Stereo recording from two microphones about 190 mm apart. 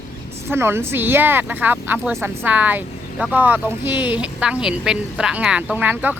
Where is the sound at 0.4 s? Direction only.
10° right (ahead or behind).